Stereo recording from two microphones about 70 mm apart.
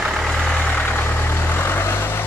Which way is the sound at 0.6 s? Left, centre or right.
Centre.